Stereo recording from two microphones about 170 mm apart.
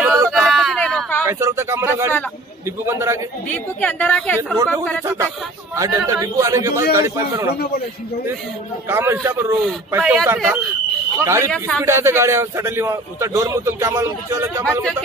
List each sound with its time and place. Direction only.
0.0 s a sound: 20° right (ahead or behind)
0.3 s a sound: centre (ahead or behind)
1.2 s a man's voice: 15° right (ahead or behind)
3.4 s a woman's voice: 10° left (ahead or behind)
5.0 s a man's voice: 20° right (ahead or behind)
8.8 s a man's voice: 15° right (ahead or behind)